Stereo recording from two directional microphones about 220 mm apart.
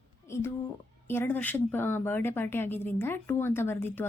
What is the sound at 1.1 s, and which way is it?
A woman's voice, 10° left (ahead or behind).